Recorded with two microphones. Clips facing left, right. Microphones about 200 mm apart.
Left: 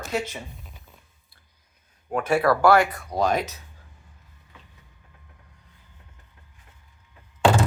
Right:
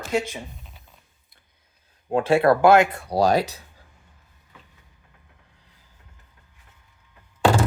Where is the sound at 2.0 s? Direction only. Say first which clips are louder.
Right 3 dB; 25° right (ahead or behind).